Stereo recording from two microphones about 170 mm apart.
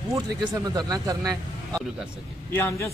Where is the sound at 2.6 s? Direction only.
10° left (ahead or behind).